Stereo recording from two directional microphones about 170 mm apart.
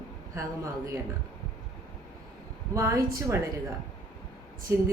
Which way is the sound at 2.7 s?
15° right (ahead or behind).